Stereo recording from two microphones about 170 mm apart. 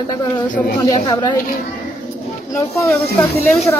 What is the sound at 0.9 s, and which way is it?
Speech, 25° left (ahead or behind).